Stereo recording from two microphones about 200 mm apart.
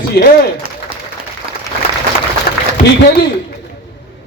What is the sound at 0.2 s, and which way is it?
Speech, 50° left (ahead or behind).